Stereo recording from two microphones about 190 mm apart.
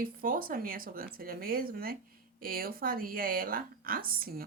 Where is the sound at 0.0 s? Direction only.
50° right (ahead or behind).